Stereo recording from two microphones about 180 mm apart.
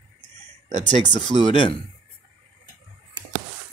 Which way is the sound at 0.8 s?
25° left (ahead or behind).